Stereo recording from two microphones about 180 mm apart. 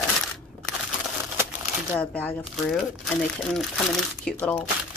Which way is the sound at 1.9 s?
10° left (ahead or behind).